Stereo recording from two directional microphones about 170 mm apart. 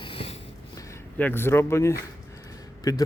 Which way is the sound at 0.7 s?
15° left (ahead or behind).